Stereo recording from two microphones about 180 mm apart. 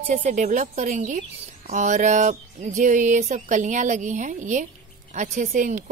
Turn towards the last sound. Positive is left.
turn(degrees=-45)  # may be behind; listen again after turning